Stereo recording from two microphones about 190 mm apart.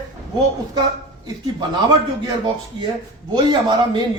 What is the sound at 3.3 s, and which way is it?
Speech, 25° right (ahead or behind).